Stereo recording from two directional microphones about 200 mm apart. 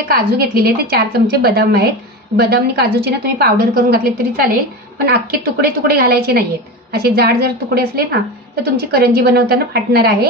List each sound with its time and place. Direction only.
0.1 s a woman's voice: 50° right (ahead or behind)